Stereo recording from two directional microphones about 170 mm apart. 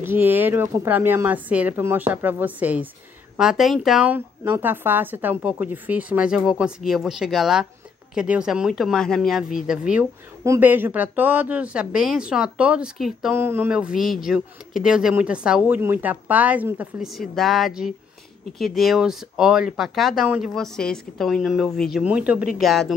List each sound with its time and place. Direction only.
0.0 s speech: 10° right (ahead or behind)
13.3 s speech: 15° right (ahead or behind)